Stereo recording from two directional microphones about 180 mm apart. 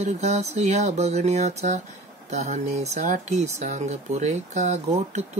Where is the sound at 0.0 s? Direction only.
40° right (ahead or behind).